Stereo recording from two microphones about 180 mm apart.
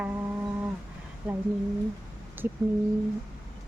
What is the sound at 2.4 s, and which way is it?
Speech, 10° right (ahead or behind).